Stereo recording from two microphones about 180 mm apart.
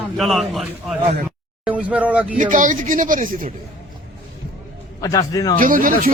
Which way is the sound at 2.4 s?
45° right (ahead or behind).